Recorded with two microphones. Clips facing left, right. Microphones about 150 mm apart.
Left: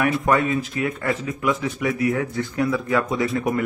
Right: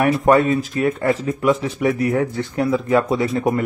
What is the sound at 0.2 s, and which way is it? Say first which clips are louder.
A man's voice: right 5 dB; 30° right (ahead or behind).